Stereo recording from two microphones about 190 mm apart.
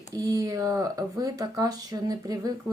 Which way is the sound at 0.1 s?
20° right (ahead or behind).